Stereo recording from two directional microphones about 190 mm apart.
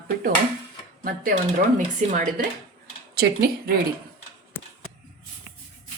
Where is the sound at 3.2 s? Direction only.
55° right (ahead or behind).